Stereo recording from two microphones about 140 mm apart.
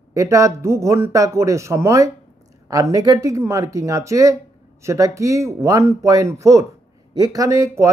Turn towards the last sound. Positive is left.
turn(degrees=-20)  # may be behind; listen again after turning